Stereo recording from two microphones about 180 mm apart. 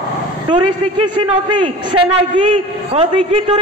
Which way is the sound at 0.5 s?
25° right (ahead or behind).